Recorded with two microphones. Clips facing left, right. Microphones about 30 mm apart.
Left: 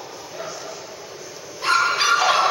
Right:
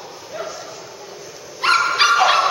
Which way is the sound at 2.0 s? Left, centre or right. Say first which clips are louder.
Right 6 dB; right.